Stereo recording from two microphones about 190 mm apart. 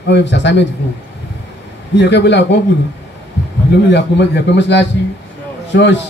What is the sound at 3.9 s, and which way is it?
A man's voice, 65° left (ahead or behind).